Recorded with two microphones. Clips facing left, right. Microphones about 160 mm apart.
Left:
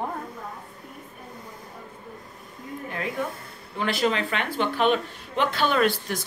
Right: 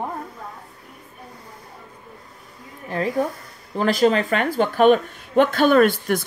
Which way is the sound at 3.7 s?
40° right (ahead or behind).